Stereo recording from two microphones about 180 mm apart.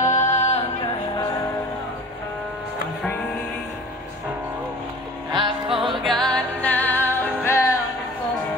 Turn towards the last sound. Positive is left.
turn(degrees=15)  # may be behind; listen again after turning